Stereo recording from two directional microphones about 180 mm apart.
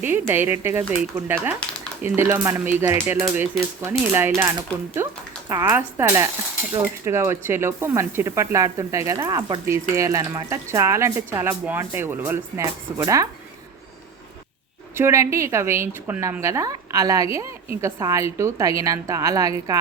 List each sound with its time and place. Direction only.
0.0 s speech: 10° right (ahead or behind)
14.9 s a woman's voice: 15° right (ahead or behind)